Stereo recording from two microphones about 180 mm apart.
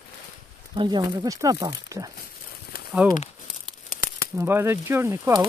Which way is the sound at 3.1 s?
45° left (ahead or behind).